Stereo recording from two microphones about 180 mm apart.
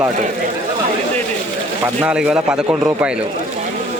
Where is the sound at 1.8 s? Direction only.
5° right (ahead or behind).